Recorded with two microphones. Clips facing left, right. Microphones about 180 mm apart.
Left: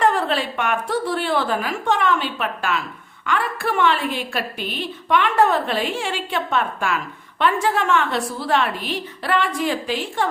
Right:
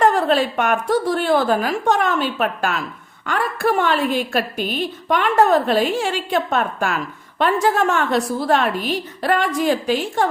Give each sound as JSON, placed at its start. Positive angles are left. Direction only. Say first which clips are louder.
{"t": 0.0, "sound": "a woman's voice", "louder": "right 4 dB", "side_deg": -45}